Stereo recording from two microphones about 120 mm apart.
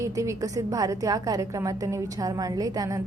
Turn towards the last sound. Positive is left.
turn(degrees=-30)  # may be behind; listen again after turning